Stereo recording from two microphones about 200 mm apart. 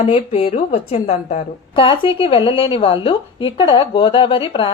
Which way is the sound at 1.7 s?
25° left (ahead or behind).